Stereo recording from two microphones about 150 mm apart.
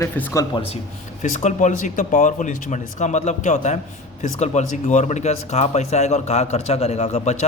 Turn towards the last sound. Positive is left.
turn(degrees=45)  # may be behind; listen again after turning